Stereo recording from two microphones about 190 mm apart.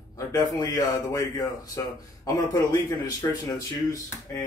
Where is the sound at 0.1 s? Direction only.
20° left (ahead or behind).